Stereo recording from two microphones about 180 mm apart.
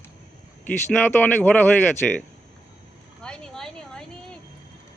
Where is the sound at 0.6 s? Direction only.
10° left (ahead or behind).